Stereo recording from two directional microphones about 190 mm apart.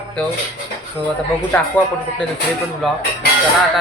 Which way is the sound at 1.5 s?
10° left (ahead or behind).